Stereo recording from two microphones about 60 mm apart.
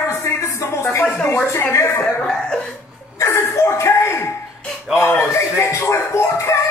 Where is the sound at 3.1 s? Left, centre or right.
Left.